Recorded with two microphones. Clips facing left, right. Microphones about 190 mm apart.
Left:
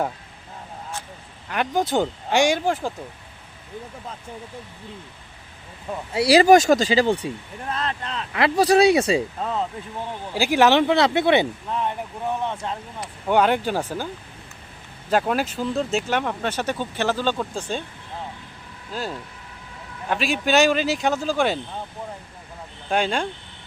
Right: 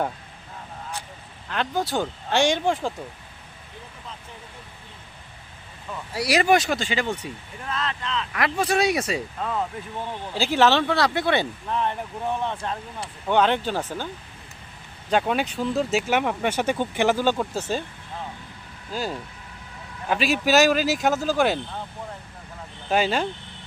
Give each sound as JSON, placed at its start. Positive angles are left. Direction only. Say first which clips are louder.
{"t": 1.5, "sound": "speech", "louder": "left 3 dB", "side_deg": 15}
{"t": 6.1, "sound": "speech", "louder": "left 6 dB", "side_deg": 30}
{"t": 7.7, "sound": "speech", "louder": "even", "side_deg": 45}
{"t": 8.3, "sound": "speech", "louder": "left 7 dB", "side_deg": 30}
{"t": 10.3, "sound": "speech", "louder": "left 3 dB", "side_deg": 10}
{"t": 15.1, "sound": "speech", "louder": "left 1 dB", "side_deg": 0}
{"t": 18.9, "sound": "speech", "louder": "right 1 dB", "side_deg": 0}
{"t": 22.9, "sound": "speech", "louder": "right 1 dB", "side_deg": -5}